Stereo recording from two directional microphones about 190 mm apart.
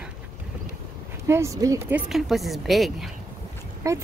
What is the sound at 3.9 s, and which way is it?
Speech, 15° right (ahead or behind).